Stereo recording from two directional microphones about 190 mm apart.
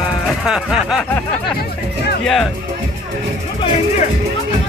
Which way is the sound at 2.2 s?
Centre (ahead or behind).